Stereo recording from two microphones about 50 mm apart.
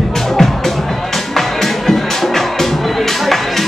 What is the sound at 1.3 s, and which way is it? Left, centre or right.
Music, centre.